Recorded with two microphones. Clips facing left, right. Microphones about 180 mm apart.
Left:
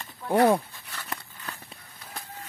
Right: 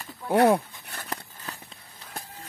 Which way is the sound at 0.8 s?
55° right (ahead or behind).